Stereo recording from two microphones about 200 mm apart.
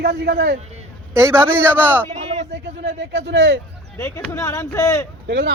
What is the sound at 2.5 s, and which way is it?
Speech, 60° right (ahead or behind).